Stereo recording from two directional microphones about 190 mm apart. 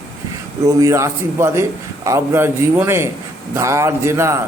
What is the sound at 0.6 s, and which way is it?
A man's voice, 15° right (ahead or behind).